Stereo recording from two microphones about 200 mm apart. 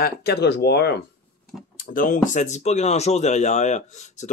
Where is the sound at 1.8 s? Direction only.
45° left (ahead or behind).